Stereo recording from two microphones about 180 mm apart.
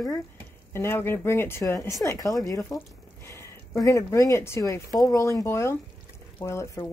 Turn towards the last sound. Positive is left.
turn(degrees=15)  # may be behind; listen again after turning